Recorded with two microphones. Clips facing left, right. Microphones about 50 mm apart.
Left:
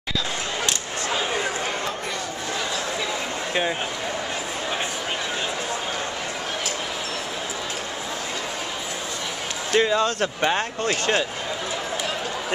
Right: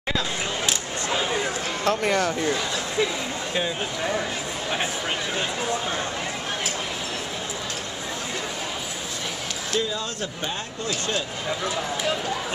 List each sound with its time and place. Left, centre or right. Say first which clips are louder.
1.1 s a sound: even; centre
1.9 s speech: right 7 dB; right
9.8 s speech: left 8 dB; left